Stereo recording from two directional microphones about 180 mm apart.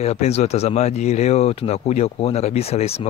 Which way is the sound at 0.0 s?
35° left (ahead or behind).